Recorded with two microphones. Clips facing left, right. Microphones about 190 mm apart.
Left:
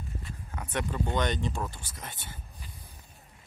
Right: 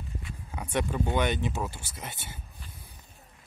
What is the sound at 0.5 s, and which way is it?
Speech, 10° right (ahead or behind).